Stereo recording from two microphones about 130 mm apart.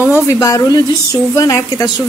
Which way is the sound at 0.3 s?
30° left (ahead or behind).